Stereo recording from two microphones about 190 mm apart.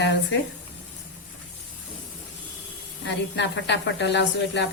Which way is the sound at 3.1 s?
70° left (ahead or behind).